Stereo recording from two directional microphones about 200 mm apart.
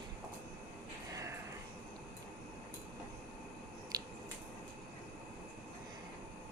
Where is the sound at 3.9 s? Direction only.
20° right (ahead or behind).